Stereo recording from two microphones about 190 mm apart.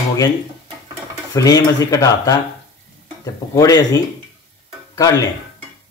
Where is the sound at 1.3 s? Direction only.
20° left (ahead or behind).